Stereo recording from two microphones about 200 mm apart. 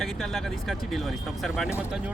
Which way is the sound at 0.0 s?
Centre (ahead or behind).